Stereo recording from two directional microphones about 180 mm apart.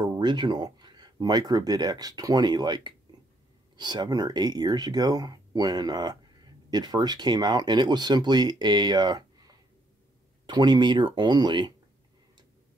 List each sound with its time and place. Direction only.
0.0 s speech: 20° right (ahead or behind)